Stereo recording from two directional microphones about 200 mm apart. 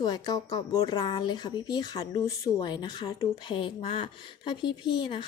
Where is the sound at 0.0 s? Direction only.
20° left (ahead or behind).